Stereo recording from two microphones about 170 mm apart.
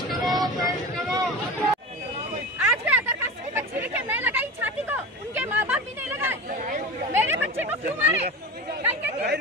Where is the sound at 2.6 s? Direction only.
10° right (ahead or behind).